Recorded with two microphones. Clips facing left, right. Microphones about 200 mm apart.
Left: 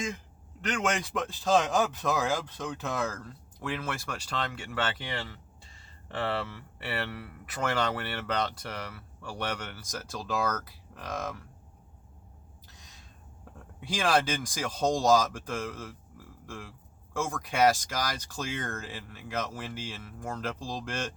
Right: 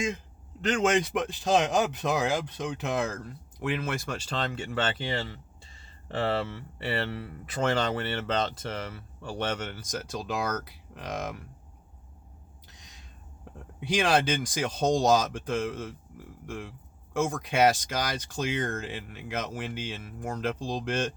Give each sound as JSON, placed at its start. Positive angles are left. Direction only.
{"t": 0.6, "sound": "speech", "side_deg": -25}
{"t": 13.4, "sound": "speech", "side_deg": -20}